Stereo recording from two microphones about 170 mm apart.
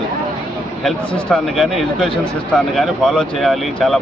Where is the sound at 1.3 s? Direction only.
Centre (ahead or behind).